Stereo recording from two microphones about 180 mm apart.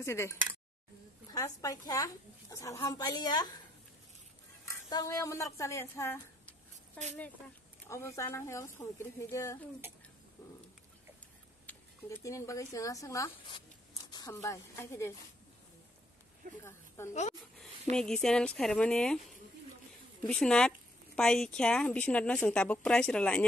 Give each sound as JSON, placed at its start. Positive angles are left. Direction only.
{"t": 0.0, "sound": "a woman's voice", "side_deg": 15}
{"t": 4.6, "sound": "a woman's voice", "side_deg": 20}
{"t": 7.9, "sound": "a woman's voice", "side_deg": 15}
{"t": 11.6, "sound": "a woman's voice", "side_deg": 15}
{"t": 16.6, "sound": "speech", "side_deg": 15}
{"t": 17.1, "sound": "speech", "side_deg": 40}
{"t": 17.9, "sound": "a woman's voice", "side_deg": 5}
{"t": 20.2, "sound": "a woman's voice", "side_deg": 5}